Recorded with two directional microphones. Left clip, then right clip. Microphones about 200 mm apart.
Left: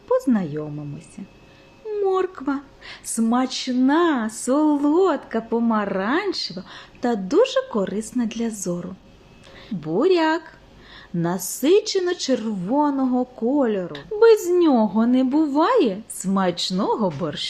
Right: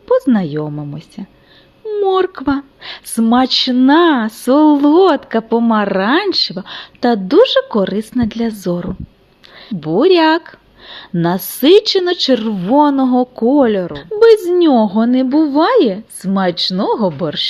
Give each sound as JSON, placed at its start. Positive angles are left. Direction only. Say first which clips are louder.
{"t": 0.1, "sound": "speech", "louder": "right 7 dB", "side_deg": -35}
{"t": 14.2, "sound": "a woman's voice", "louder": "right 6 dB", "side_deg": -25}